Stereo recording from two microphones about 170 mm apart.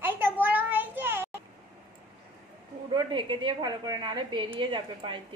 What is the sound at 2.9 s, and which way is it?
A woman's voice, 30° right (ahead or behind).